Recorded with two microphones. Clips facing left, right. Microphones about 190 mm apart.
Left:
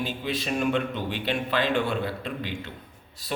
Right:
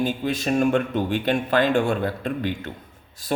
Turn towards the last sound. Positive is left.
turn(degrees=-45)  # may be behind; listen again after turning